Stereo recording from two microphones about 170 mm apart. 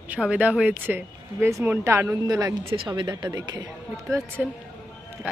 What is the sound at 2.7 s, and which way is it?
Speech, 30° right (ahead or behind).